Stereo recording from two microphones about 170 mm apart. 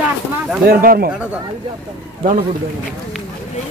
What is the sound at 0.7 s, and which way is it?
Speech, 60° right (ahead or behind).